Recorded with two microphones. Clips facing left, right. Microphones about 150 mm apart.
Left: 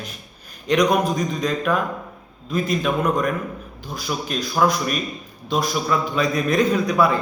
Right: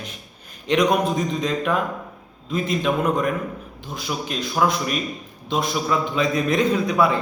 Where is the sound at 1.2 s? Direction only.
25° right (ahead or behind).